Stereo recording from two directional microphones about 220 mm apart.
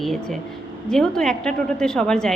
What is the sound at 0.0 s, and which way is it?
A woman's voice, centre (ahead or behind).